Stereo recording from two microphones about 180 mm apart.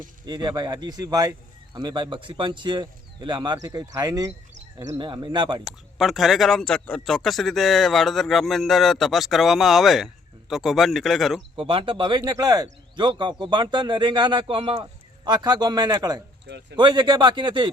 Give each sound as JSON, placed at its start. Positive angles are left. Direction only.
{"t": 0.3, "sound": "speech", "side_deg": -25}
{"t": 5.6, "sound": "speech", "side_deg": 0}
{"t": 11.5, "sound": "speech", "side_deg": -30}